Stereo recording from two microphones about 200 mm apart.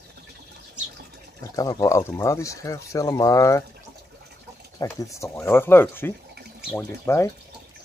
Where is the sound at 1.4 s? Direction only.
15° left (ahead or behind).